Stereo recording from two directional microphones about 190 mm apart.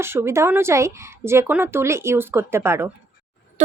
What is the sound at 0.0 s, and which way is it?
Speech, 10° right (ahead or behind).